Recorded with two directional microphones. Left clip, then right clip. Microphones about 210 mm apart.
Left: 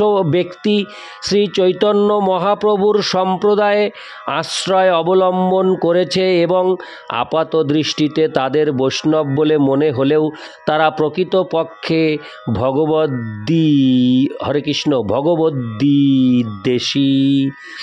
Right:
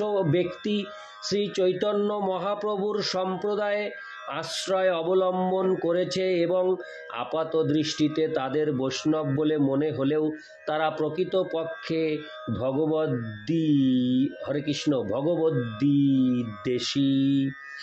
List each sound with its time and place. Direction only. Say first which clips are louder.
0.0 s speech: left 10 dB; 50° left (ahead or behind)